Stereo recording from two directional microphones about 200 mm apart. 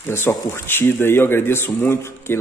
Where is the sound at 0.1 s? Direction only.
10° left (ahead or behind).